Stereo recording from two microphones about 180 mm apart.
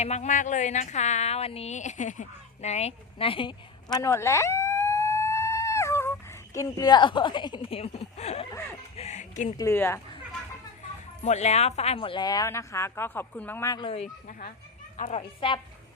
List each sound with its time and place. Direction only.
0.0 s speech: 40° left (ahead or behind)
3.9 s a sound: 15° left (ahead or behind); by 8.4 s 35° left (ahead or behind)
9.0 s music: 40° left (ahead or behind)
9.6 s speech: 15° left (ahead or behind)
11.2 s speech: 40° left (ahead or behind); by 13.8 s 15° left (ahead or behind)
13.8 s speech: 35° left (ahead or behind)